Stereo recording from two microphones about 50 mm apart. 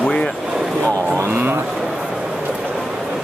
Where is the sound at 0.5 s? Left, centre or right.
Centre.